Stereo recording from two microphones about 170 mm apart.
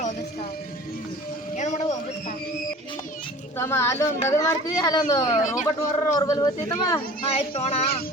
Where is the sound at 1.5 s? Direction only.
45° left (ahead or behind).